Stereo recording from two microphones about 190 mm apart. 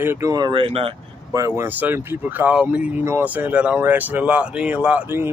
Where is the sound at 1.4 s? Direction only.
15° right (ahead or behind).